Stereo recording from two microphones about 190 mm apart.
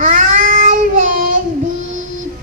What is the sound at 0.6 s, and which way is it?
Child singing, 45° right (ahead or behind).